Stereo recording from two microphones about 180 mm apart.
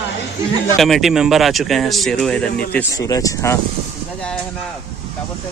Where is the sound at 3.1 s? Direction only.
15° left (ahead or behind).